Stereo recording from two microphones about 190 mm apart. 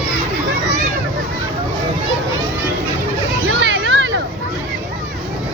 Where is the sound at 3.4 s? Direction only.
70° right (ahead or behind).